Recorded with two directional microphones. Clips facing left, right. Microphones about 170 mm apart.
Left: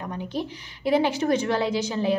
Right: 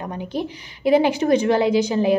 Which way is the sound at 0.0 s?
15° right (ahead or behind).